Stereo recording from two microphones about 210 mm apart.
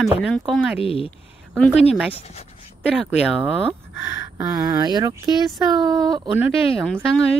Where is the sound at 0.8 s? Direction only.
25° left (ahead or behind).